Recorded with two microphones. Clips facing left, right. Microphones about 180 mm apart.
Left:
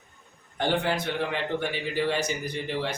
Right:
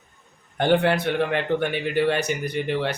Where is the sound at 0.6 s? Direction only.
60° right (ahead or behind).